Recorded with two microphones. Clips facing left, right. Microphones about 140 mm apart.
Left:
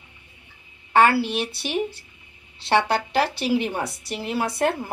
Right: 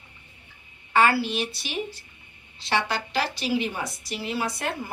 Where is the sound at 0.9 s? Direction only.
60° left (ahead or behind).